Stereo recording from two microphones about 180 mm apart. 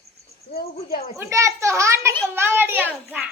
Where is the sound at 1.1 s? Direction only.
15° right (ahead or behind).